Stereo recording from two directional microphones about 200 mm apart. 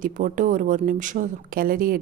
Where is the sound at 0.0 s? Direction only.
40° right (ahead or behind).